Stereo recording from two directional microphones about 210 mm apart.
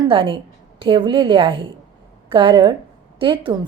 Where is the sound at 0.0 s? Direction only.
25° right (ahead or behind).